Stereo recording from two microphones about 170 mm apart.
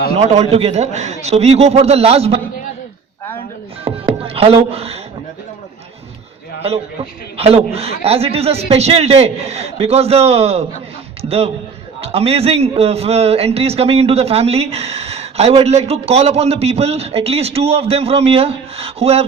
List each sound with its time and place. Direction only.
0.2 s a man's voice: 40° right (ahead or behind)
4.4 s speech: 35° right (ahead or behind)
7.3 s a man's voice: 35° right (ahead or behind)